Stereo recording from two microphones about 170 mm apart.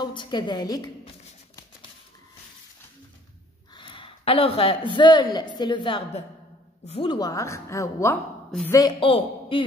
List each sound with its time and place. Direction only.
0.0 s a woman's voice: 25° left (ahead or behind)
3.7 s a man's voice: 30° left (ahead or behind)
7.1 s a woman's voice: 20° left (ahead or behind)
9.0 s a man's voice: 30° left (ahead or behind)